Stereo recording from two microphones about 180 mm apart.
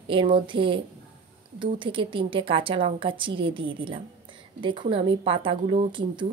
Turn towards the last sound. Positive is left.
turn(degrees=-25)  # may be behind; listen again after turning